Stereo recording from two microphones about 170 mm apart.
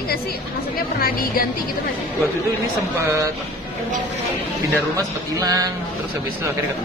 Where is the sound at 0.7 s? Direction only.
60° left (ahead or behind).